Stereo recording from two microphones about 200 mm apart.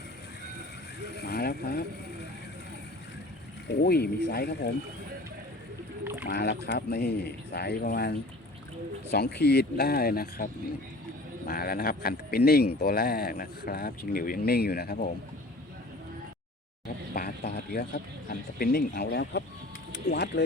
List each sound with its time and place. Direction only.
1.2 s vehicle: 50° left (ahead or behind)
3.7 s speech: 50° left (ahead or behind)
6.2 s rowboat: 55° left (ahead or behind)
6.7 s speech: 55° left (ahead or behind)
9.1 s speech: 55° left (ahead or behind)
17.2 s speech: 50° left (ahead or behind)